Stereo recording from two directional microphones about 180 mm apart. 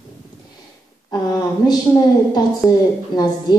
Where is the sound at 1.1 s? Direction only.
20° left (ahead or behind).